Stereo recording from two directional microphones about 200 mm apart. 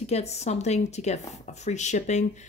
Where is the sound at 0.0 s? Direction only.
30° left (ahead or behind).